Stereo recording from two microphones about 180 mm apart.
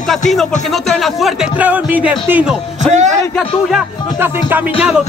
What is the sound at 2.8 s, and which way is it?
Speech, 40° right (ahead or behind).